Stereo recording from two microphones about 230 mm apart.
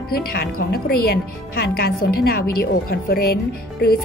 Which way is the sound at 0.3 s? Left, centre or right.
Left.